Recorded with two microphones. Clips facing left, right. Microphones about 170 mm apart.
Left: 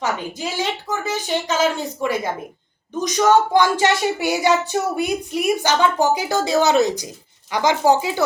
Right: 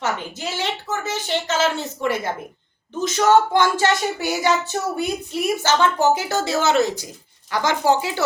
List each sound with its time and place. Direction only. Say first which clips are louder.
0.0 s child singing: left 2 dB; 10° left (ahead or behind)